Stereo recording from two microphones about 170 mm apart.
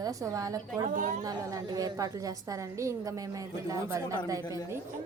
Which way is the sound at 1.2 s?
20° right (ahead or behind).